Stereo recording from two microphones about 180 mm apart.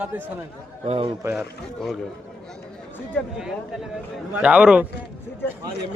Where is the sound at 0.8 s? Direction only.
30° right (ahead or behind).